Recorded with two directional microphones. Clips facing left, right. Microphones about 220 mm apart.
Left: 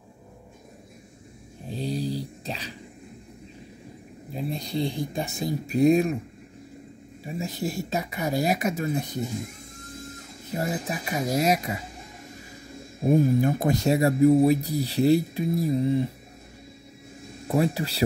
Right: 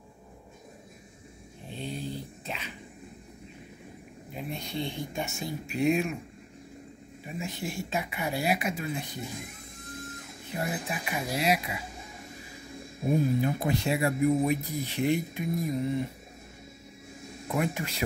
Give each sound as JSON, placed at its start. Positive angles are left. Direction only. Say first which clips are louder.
{"t": 1.7, "sound": "dog", "louder": "left 7 dB", "side_deg": 35}
{"t": 4.3, "sound": "speech", "louder": "left 6 dB", "side_deg": 35}
{"t": 7.2, "sound": "speech", "louder": "left 5 dB", "side_deg": 40}
{"t": 10.5, "sound": "speech", "louder": "left 4 dB", "side_deg": 40}
{"t": 13.0, "sound": "speech", "louder": "left 5 dB", "side_deg": 50}
{"t": 17.5, "sound": "speech", "louder": "left 6 dB", "side_deg": 35}